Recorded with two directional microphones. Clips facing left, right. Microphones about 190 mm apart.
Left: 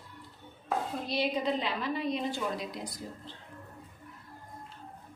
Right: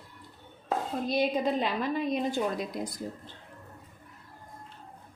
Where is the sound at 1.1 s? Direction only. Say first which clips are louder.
Right 3 dB; 50° right (ahead or behind).